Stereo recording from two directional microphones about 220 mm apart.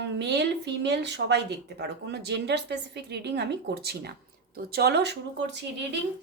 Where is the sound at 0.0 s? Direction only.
50° right (ahead or behind).